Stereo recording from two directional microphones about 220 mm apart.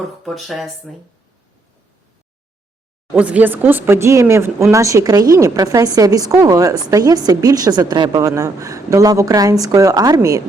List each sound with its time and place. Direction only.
0.0 s speech: centre (ahead or behind)
3.2 s a woman's voice: 5° right (ahead or behind)